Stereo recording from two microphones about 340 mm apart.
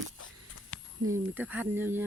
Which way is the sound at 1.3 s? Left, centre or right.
Centre.